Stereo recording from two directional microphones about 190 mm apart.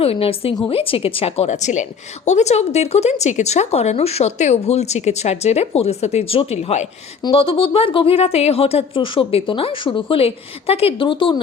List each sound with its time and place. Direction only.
0.0 s a woman's voice: 30° left (ahead or behind)